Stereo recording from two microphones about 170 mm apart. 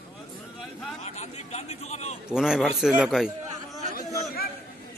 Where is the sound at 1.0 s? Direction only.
40° left (ahead or behind).